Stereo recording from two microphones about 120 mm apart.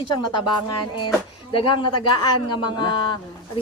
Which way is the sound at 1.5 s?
45° left (ahead or behind).